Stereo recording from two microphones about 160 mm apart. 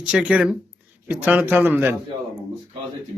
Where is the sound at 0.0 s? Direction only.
5° right (ahead or behind).